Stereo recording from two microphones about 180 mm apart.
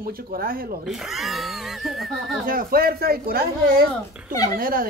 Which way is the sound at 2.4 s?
55° right (ahead or behind).